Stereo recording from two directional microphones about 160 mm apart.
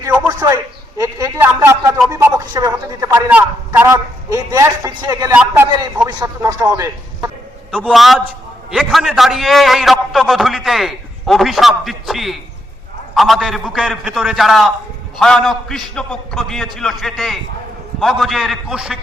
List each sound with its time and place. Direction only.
0.3 s a sound: 20° right (ahead or behind)
2.0 s a man's voice: 20° right (ahead or behind)
5.3 s a man's voice: 10° right (ahead or behind)
6.1 s a man's voice: 25° right (ahead or behind)
6.6 s a man's voice: 10° right (ahead or behind)